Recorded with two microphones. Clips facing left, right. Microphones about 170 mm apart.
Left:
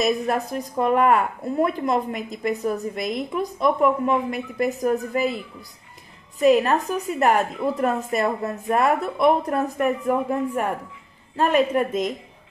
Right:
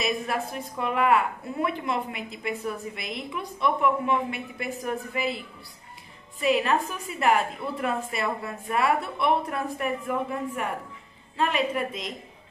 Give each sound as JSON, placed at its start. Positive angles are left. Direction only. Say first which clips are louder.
{"t": 0.0, "sound": "a woman's voice", "louder": "left 6 dB", "side_deg": 40}
{"t": 6.4, "sound": "a woman's voice", "louder": "left 6 dB", "side_deg": 45}